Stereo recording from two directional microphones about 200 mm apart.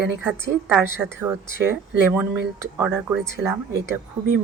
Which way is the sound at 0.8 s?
10° right (ahead or behind).